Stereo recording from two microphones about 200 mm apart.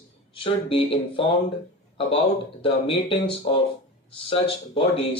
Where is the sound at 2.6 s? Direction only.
25° left (ahead or behind).